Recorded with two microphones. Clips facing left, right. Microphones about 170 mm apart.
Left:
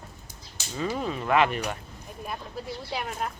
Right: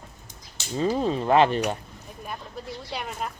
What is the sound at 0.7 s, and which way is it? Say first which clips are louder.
Speech: right 6 dB; 30° right (ahead or behind).